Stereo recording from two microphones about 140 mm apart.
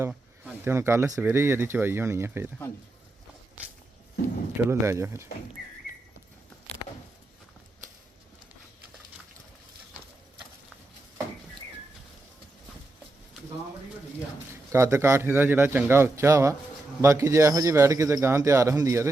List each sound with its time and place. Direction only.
0.6 s speech: 20° right (ahead or behind)
4.5 s speech: 20° right (ahead or behind)
14.7 s speech: 20° right (ahead or behind)